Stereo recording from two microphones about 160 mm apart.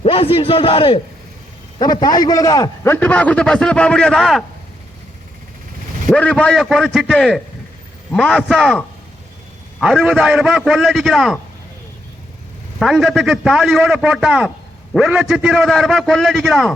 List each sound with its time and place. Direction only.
0.0 s a man's voice: 35° left (ahead or behind); by 4.4 s centre (ahead or behind)
6.1 s a man's voice: 5° left (ahead or behind)
9.8 s a man's voice: 5° right (ahead or behind)
12.8 s a man's voice: centre (ahead or behind)